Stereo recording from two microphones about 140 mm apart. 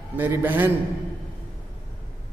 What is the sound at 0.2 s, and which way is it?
Speech, 15° right (ahead or behind).